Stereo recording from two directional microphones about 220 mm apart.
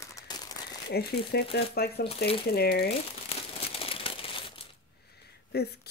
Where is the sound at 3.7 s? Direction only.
25° left (ahead or behind).